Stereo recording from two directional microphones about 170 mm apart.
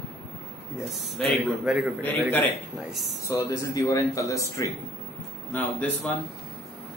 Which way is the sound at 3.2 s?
15° left (ahead or behind).